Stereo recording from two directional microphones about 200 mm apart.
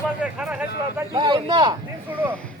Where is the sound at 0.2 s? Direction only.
5° right (ahead or behind).